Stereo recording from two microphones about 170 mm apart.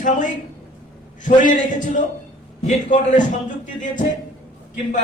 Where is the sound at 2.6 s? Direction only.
45° left (ahead or behind).